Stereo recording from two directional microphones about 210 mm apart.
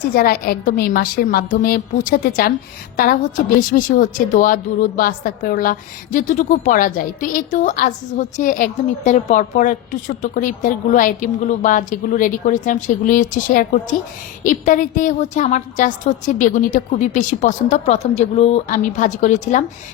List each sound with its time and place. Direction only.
0.1 s a woman's voice: 45° left (ahead or behind)